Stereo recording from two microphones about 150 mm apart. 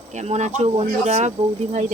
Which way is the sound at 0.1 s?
50° right (ahead or behind).